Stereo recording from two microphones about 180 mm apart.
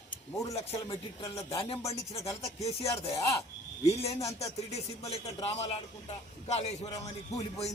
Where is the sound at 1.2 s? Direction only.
30° left (ahead or behind).